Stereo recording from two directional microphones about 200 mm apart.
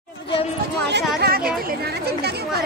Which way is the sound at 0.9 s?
55° right (ahead or behind).